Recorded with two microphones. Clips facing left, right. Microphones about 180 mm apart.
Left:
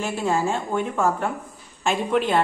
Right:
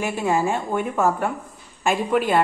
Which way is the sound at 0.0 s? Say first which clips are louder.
Right 2 dB; 15° right (ahead or behind).